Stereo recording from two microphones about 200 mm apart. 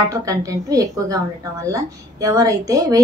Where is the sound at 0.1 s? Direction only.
15° right (ahead or behind).